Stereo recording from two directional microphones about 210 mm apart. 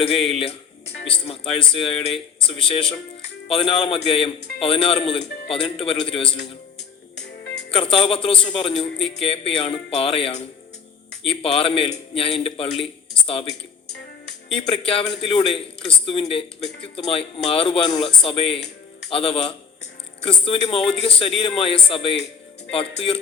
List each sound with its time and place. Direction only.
0.0 s speech: 25° left (ahead or behind)
7.5 s music: 25° left (ahead or behind)
8.0 s speech: 25° left (ahead or behind)
14.5 s speech: 25° left (ahead or behind)